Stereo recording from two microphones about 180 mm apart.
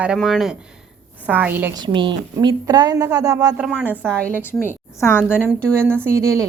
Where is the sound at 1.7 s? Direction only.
25° right (ahead or behind).